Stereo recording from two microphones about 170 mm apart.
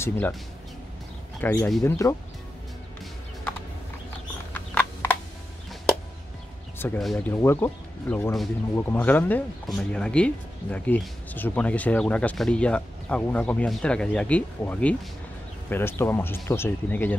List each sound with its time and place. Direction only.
1.4 s speech: 10° left (ahead or behind)
4.6 s a sound: 10° left (ahead or behind)
7.0 s speech: 5° left (ahead or behind)